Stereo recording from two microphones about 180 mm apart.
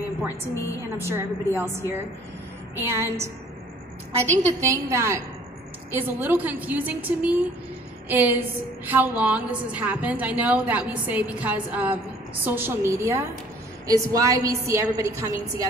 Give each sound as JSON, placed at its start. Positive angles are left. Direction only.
{"t": 0.9, "sound": "a woman's voice", "side_deg": -15}
{"t": 4.3, "sound": "a woman's voice", "side_deg": -40}
{"t": 4.6, "sound": "a woman's voice", "side_deg": -15}